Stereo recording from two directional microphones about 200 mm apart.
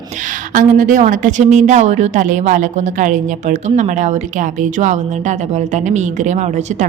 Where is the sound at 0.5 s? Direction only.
40° right (ahead or behind).